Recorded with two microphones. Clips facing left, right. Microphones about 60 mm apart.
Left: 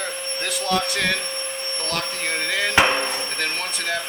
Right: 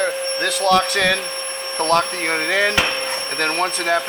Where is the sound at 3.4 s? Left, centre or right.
Right.